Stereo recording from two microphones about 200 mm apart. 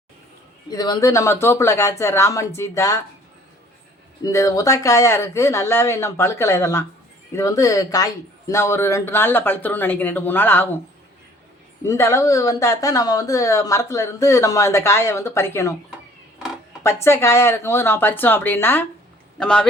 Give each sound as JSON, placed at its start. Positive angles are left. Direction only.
{"t": 0.7, "sound": "speech", "side_deg": 20}
{"t": 4.2, "sound": "speech", "side_deg": 15}
{"t": 11.8, "sound": "speech", "side_deg": 15}
{"t": 16.8, "sound": "speech", "side_deg": 15}